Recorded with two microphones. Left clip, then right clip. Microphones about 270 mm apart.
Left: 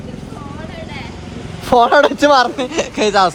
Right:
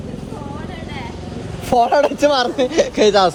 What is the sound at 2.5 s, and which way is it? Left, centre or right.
Speech, centre.